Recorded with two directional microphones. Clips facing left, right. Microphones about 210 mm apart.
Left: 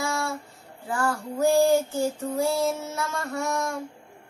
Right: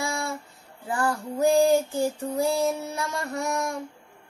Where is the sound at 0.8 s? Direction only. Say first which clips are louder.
Even; 15° right (ahead or behind).